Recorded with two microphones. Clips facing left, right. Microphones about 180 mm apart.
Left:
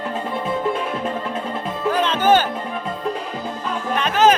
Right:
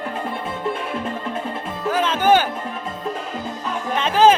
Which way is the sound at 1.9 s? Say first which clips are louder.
Even; 5° right (ahead or behind).